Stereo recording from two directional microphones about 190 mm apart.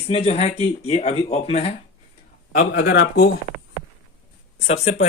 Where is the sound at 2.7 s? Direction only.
60° left (ahead or behind).